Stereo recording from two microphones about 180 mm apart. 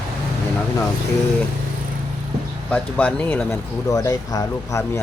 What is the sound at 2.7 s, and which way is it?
Speech, 10° left (ahead or behind).